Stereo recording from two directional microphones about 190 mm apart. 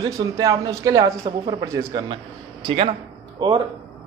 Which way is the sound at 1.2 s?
30° right (ahead or behind).